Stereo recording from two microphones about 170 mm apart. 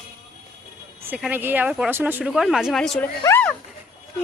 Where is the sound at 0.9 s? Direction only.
10° right (ahead or behind).